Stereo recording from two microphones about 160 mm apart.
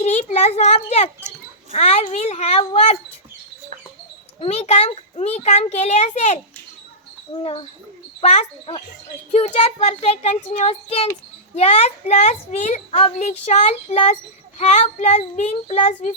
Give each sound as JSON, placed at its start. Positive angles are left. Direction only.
{"t": 0.0, "sound": "a child's voice", "side_deg": 45}
{"t": 4.4, "sound": "a child's voice", "side_deg": 40}
{"t": 8.2, "sound": "a child's voice", "side_deg": 40}